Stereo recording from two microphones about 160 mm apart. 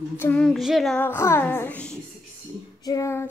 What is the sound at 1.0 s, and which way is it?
Speech, 15° left (ahead or behind).